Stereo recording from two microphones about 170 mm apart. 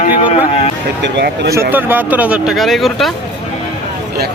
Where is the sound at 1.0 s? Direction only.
90° right.